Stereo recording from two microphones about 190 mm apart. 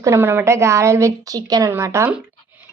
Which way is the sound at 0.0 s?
15° right (ahead or behind).